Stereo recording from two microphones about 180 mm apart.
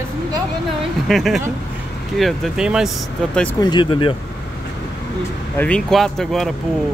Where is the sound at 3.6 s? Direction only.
25° left (ahead or behind).